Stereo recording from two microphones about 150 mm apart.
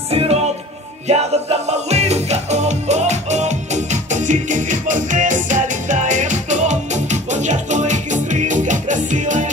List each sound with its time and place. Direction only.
0.1 s music: 40° right (ahead or behind)